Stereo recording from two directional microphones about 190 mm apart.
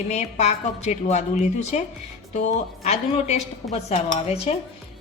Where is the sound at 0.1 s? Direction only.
35° left (ahead or behind).